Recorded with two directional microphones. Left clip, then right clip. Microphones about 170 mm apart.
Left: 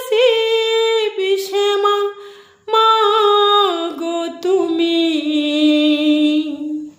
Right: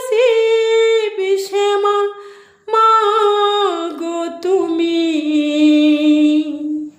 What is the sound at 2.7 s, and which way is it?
Music, centre (ahead or behind).